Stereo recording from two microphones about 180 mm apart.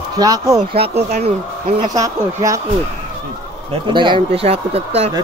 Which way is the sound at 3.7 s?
25° right (ahead or behind).